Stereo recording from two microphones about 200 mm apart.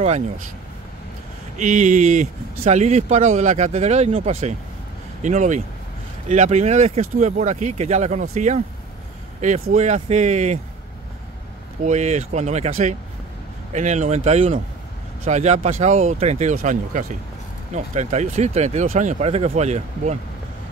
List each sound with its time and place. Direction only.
1.6 s speech: 40° right (ahead or behind)
11.8 s speech: 35° right (ahead or behind)